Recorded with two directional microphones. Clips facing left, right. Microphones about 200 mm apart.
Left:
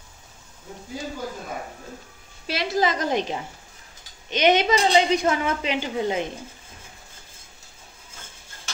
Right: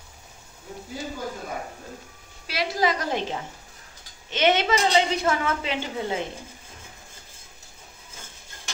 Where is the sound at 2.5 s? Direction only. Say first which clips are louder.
Left 1 dB; 25° left (ahead or behind).